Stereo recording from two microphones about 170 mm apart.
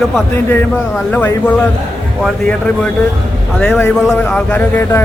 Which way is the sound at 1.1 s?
10° left (ahead or behind).